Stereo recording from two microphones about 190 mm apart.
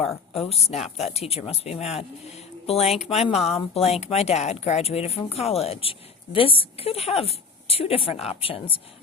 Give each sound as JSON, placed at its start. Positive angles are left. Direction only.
{"t": 0.3, "sound": "speech", "side_deg": 30}